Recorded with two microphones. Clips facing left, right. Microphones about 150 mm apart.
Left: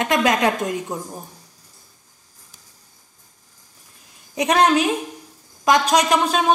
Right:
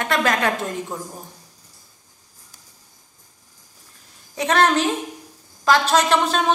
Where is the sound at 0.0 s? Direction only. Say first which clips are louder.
Left 2 dB; 20° left (ahead or behind).